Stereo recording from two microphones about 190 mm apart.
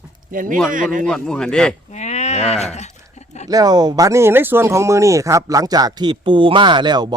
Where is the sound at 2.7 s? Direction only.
35° left (ahead or behind).